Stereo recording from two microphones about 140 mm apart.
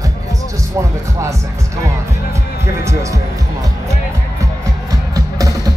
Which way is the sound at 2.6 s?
20° right (ahead or behind).